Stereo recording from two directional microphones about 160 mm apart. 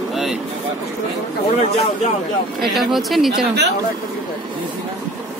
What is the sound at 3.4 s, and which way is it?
Speech, 90° right.